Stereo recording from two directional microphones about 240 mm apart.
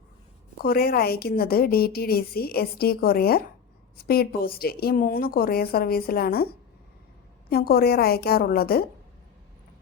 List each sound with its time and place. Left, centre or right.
0.6 s a woman's voice: left
7.5 s a woman's voice: left